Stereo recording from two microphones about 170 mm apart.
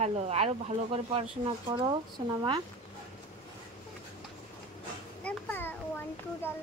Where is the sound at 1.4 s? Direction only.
25° right (ahead or behind).